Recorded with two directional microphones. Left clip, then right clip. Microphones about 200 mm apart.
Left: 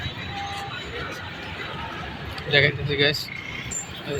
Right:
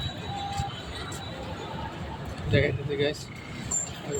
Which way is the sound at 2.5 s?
Centre (ahead or behind).